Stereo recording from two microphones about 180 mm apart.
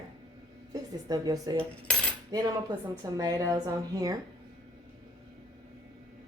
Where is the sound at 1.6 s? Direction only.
5° left (ahead or behind).